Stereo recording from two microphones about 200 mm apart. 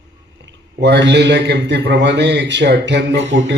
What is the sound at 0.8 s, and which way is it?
A man's voice, 60° right (ahead or behind).